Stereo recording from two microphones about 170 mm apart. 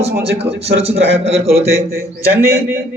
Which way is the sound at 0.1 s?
75° right (ahead or behind).